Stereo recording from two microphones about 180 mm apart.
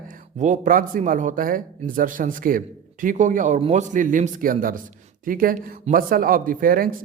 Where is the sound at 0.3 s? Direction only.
45° right (ahead or behind).